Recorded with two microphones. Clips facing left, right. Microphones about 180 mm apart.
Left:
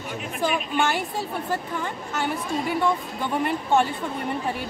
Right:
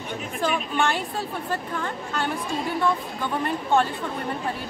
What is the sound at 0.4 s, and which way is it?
Speech, 5° left (ahead or behind).